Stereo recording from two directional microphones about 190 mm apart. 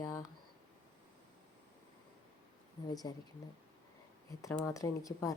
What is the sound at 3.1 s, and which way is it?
Speech, 20° left (ahead or behind).